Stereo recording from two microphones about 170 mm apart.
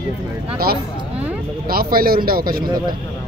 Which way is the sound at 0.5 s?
65° right (ahead or behind).